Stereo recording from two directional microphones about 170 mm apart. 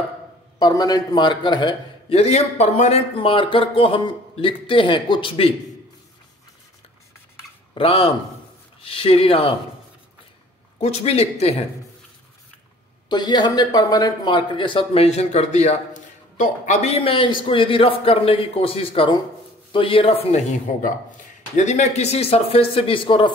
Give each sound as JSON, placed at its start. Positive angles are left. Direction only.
{"t": 0.6, "sound": "speech", "side_deg": 25}
{"t": 7.7, "sound": "speech", "side_deg": 35}
{"t": 10.8, "sound": "speech", "side_deg": 35}
{"t": 13.1, "sound": "speech", "side_deg": 25}